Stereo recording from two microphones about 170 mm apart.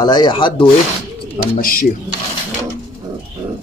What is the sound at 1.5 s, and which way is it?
Speech, 55° left (ahead or behind).